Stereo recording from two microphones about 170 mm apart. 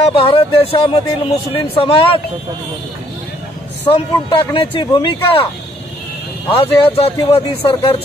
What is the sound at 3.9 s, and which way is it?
Speech, 30° left (ahead or behind).